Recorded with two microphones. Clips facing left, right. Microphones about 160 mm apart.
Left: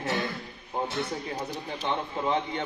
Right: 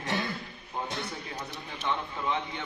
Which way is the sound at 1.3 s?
35° left (ahead or behind).